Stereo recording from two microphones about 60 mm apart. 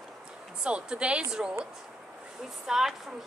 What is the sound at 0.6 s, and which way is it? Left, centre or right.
Speech, centre.